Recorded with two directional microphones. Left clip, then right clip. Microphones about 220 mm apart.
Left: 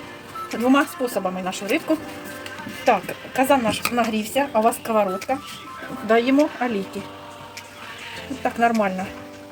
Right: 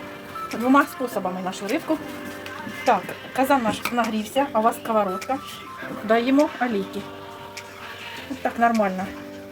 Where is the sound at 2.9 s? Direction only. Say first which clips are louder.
Left 1 dB; 25° left (ahead or behind).